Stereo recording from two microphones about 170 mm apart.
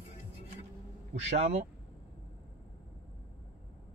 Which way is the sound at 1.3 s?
40° right (ahead or behind).